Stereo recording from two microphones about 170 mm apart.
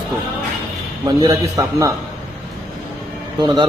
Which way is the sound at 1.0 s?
20° right (ahead or behind).